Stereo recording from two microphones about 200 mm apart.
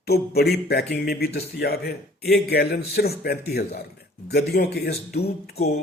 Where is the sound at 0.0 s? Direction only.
50° left (ahead or behind).